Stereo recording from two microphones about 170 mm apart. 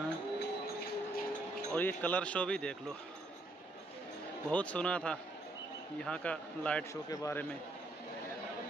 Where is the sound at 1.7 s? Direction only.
10° left (ahead or behind).